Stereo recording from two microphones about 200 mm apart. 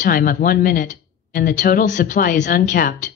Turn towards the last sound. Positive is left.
turn(degrees=45)  # may be behind; listen again after turning